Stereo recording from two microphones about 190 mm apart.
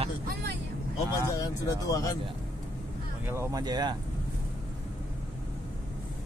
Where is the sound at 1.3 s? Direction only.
20° left (ahead or behind).